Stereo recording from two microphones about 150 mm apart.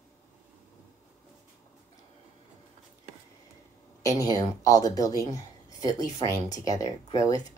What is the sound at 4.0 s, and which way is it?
Speech, 20° left (ahead or behind).